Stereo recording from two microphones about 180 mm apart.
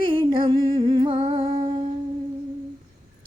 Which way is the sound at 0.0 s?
30° right (ahead or behind).